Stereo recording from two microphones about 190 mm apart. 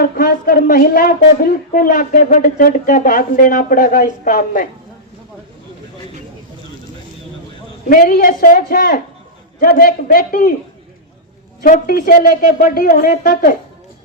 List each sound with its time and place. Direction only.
0.0 s a woman's voice: 50° left (ahead or behind)
7.9 s a woman's voice: 50° left (ahead or behind)
11.6 s a woman's voice: 50° left (ahead or behind)